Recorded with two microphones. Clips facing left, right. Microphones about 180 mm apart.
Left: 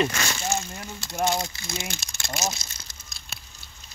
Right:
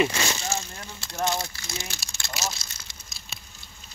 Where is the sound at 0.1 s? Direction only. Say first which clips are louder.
Right 2 dB; 20° right (ahead or behind).